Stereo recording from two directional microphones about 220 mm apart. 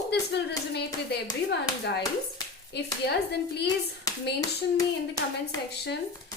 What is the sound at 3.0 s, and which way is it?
Speech, 50° left (ahead or behind).